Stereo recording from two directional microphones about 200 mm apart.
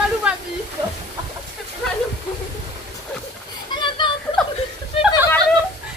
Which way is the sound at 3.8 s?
25° left (ahead or behind).